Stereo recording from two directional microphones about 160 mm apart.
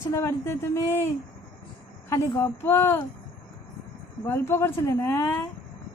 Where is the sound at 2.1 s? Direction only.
15° left (ahead or behind).